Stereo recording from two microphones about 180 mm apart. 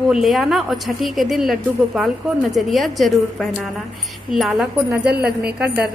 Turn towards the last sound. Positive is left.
turn(degrees=-60)  # may be behind; listen again after turning